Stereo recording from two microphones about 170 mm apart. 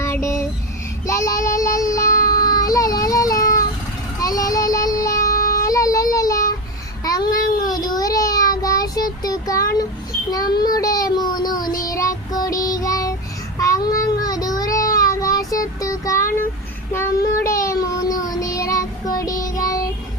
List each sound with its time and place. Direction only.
0.0 s music: 15° left (ahead or behind)
1.0 s child singing: 20° left (ahead or behind)
2.3 s vehicle: 20° left (ahead or behind)
4.2 s child singing: 20° left (ahead or behind)
17.4 s a sound: 20° left (ahead or behind)
18.3 s child singing: 20° left (ahead or behind)